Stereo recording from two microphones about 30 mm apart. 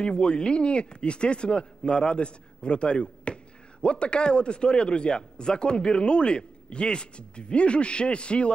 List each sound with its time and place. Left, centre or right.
0.0 s speech: left